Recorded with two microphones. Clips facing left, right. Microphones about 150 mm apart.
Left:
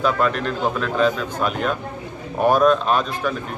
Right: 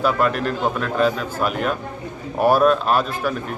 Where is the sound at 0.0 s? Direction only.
5° right (ahead or behind).